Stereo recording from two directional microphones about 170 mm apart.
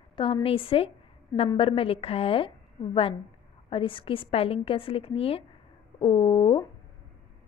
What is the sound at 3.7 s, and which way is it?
A woman's voice, 30° left (ahead or behind).